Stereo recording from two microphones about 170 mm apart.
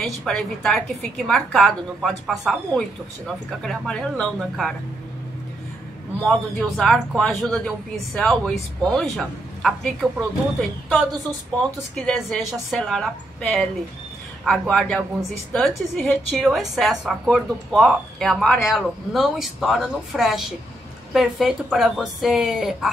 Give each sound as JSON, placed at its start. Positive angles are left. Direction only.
{"t": 0.0, "sound": "a woman's voice", "side_deg": 0}
{"t": 6.2, "sound": "a woman's voice", "side_deg": 0}
{"t": 11.5, "sound": "a woman's voice", "side_deg": 5}